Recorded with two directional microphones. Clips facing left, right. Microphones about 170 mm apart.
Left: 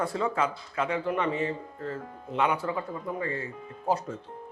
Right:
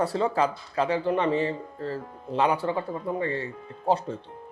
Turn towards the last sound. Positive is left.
turn(degrees=-30)  # may be behind; listen again after turning